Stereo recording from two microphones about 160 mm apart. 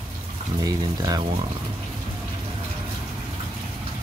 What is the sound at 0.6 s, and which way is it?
Speech, 25° right (ahead or behind).